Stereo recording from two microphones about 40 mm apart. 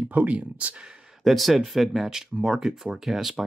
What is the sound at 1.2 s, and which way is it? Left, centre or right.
Speech, centre.